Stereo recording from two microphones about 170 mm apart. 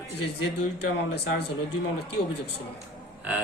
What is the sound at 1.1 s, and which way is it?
Speech, 75° left (ahead or behind).